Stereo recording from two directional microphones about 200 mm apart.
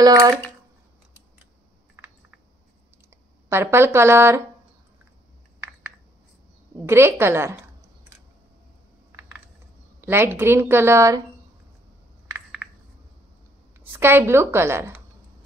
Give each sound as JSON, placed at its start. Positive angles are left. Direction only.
{"t": 0.0, "sound": "a woman's voice", "side_deg": -20}
{"t": 2.0, "sound": "typing", "side_deg": -10}
{"t": 3.4, "sound": "a woman's voice", "side_deg": -10}
{"t": 6.9, "sound": "speech", "side_deg": -10}
{"t": 10.0, "sound": "a woman's voice", "side_deg": -10}
{"t": 12.3, "sound": "a sound", "side_deg": -5}
{"t": 13.9, "sound": "a woman's voice", "side_deg": -10}